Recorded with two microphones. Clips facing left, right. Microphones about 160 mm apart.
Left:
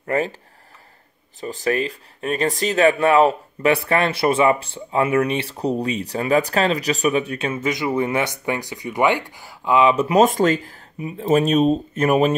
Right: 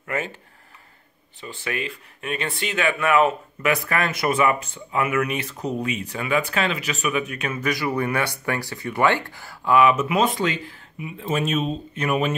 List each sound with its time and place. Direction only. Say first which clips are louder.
0.0 s speech: left 6 dB; 35° left (ahead or behind)
1.4 s speech: left 8 dB; 40° left (ahead or behind)